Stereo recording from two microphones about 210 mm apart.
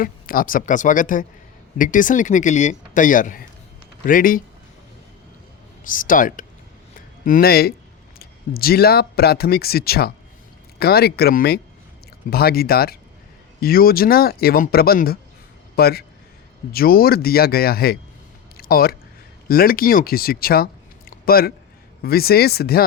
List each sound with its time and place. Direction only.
0.0 s speech: 40° left (ahead or behind)
5.8 s a man's voice: 40° left (ahead or behind)
18.5 s a sound: 45° left (ahead or behind)
19.5 s speech: 45° left (ahead or behind)